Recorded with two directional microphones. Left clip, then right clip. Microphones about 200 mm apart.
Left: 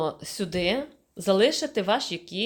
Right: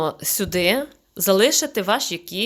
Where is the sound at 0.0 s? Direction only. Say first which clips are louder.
Right 5 dB; 20° right (ahead or behind).